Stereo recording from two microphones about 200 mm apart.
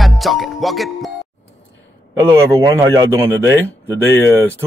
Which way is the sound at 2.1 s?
15° right (ahead or behind).